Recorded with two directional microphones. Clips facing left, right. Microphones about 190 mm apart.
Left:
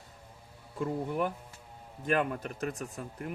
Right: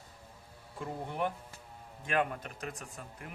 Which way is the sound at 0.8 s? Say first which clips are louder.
Left 5 dB; 45° left (ahead or behind).